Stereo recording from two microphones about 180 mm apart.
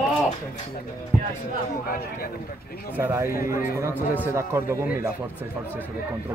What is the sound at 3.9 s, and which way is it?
Speech, 10° left (ahead or behind).